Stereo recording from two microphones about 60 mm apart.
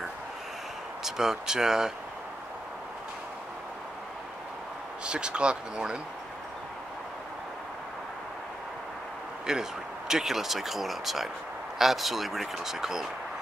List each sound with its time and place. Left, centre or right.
1.0 s speech: centre
5.0 s speech: centre
9.5 s speech: centre